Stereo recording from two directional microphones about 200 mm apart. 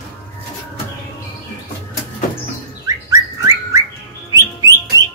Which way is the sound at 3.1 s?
15° right (ahead or behind).